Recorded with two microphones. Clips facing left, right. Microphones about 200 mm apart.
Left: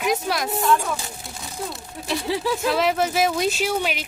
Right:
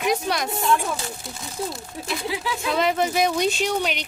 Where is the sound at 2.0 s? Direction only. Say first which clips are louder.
Left 4 dB; 40° left (ahead or behind).